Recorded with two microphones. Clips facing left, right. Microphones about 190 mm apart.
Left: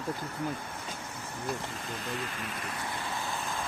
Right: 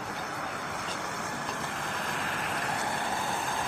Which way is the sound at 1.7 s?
90° right.